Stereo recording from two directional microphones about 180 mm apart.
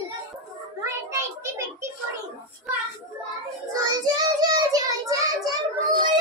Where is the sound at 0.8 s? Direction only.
15° right (ahead or behind).